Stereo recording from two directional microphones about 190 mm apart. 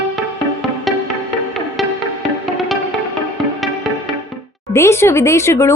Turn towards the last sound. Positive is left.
turn(degrees=15)  # may be behind; listen again after turning